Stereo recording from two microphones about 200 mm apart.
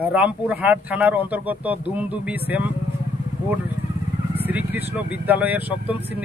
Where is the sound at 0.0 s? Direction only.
5° right (ahead or behind).